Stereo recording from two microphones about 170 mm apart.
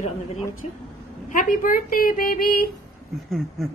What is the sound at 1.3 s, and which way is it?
Speech, 55° left (ahead or behind).